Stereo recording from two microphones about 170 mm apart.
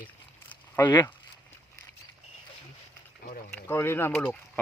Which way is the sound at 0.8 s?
25° left (ahead or behind).